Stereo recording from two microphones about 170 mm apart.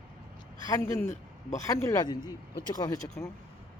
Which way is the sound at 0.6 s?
20° left (ahead or behind).